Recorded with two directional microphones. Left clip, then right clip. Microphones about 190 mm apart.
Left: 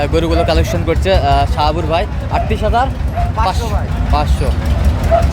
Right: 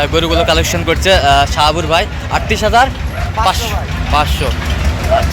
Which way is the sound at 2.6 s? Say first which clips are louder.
Right 5 dB; 15° right (ahead or behind).